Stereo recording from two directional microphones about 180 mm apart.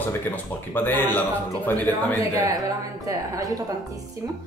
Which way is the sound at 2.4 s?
20° right (ahead or behind).